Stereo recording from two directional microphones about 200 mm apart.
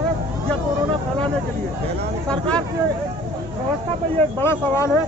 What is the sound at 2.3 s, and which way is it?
Speech, 5° left (ahead or behind).